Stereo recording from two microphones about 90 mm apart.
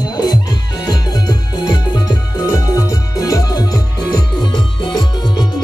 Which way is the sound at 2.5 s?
40° left (ahead or behind).